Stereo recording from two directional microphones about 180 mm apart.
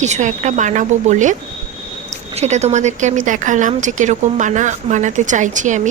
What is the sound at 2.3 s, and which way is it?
A woman's voice, 40° right (ahead or behind).